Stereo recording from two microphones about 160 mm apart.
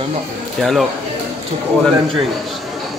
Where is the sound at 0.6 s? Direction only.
Centre (ahead or behind).